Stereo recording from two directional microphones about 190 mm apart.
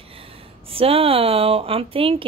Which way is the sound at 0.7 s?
30° right (ahead or behind).